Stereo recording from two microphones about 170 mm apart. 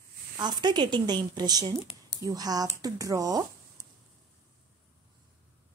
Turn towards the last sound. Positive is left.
turn(degrees=-20)  # may be behind; listen again after turning